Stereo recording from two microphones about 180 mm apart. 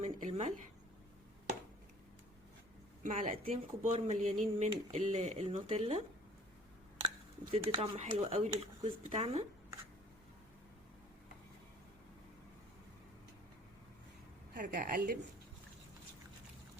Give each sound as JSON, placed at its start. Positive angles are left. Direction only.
{"t": 0.0, "sound": "a sound", "side_deg": -35}
{"t": 3.0, "sound": "speech", "side_deg": -45}
{"t": 3.4, "sound": "speech", "side_deg": -35}
{"t": 7.5, "sound": "speech", "side_deg": -30}
{"t": 14.5, "sound": "speech", "side_deg": -50}